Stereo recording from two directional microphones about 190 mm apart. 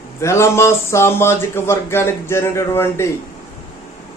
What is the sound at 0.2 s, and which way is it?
A man's voice, 15° left (ahead or behind).